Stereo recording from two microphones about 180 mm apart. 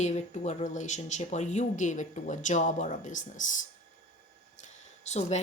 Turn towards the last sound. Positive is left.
turn(degrees=40)  # may be behind; listen again after turning